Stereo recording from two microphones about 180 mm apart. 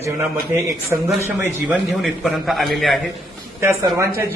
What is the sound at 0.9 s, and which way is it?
Speech, 15° right (ahead or behind).